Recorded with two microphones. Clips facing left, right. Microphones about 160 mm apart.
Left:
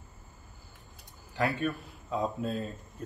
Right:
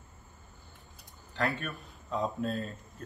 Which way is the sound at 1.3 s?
15° left (ahead or behind).